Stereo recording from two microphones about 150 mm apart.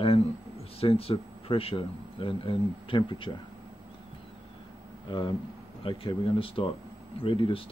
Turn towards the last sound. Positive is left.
turn(degrees=35)  # may be behind; listen again after turning